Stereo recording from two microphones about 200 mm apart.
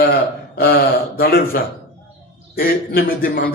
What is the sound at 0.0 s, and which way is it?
A man's voice, 50° left (ahead or behind).